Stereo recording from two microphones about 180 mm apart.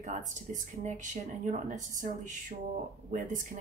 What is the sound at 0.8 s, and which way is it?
A woman's voice, 45° right (ahead or behind).